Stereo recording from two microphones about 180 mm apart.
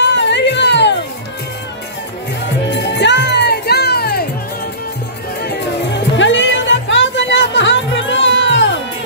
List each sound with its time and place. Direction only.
0.0 s music: 80° left
2.7 s music: 75° left (ahead or behind); by 4.3 s 60° left (ahead or behind)
5.5 s music: 85° left